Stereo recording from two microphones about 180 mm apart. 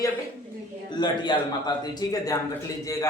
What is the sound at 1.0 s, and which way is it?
A man's voice, 25° left (ahead or behind).